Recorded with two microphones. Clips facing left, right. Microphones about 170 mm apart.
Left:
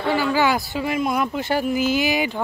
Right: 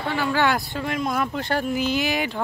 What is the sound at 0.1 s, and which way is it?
Speech, 5° left (ahead or behind).